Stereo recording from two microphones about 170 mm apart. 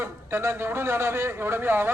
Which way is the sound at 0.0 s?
15° right (ahead or behind).